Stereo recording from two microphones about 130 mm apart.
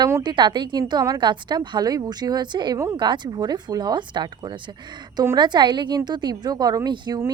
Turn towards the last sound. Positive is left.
turn(degrees=-35)  # may be behind; listen again after turning